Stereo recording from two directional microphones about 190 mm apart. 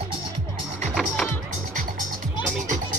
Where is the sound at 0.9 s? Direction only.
Centre (ahead or behind).